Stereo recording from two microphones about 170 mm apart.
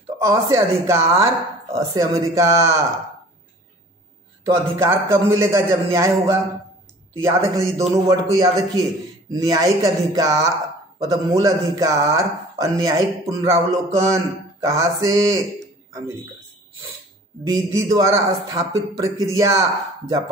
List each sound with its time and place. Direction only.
0.2 s a man's voice: 15° right (ahead or behind)
4.5 s a man's voice: 15° right (ahead or behind)
17.5 s a man's voice: 20° right (ahead or behind)